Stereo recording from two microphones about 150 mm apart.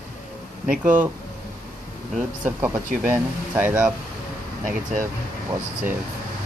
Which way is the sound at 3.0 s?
10° right (ahead or behind).